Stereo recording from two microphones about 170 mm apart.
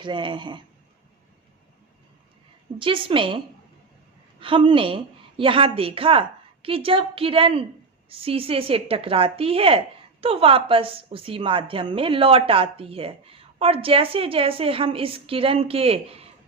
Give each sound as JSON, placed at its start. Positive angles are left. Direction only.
{"t": 0.0, "sound": "speech", "side_deg": -30}
{"t": 2.7, "sound": "a woman's voice", "side_deg": -30}